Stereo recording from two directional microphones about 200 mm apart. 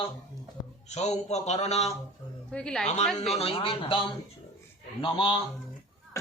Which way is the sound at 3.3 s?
25° left (ahead or behind).